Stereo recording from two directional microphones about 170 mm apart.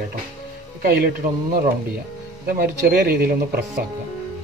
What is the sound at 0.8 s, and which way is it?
Speech, 65° right (ahead or behind).